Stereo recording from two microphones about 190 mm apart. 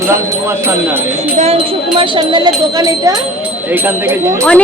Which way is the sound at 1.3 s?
35° right (ahead or behind).